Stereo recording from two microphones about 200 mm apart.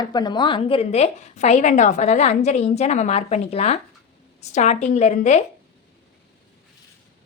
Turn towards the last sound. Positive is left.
turn(degrees=35)  # may be behind; listen again after turning